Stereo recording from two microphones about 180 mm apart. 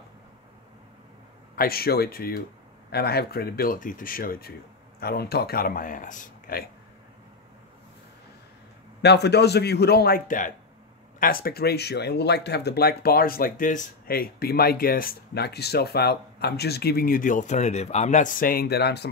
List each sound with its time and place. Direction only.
1.6 s speech: 60° left (ahead or behind)
9.0 s speech: 70° left (ahead or behind)